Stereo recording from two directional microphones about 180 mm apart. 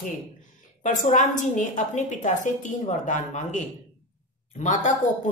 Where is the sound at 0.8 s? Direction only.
45° left (ahead or behind).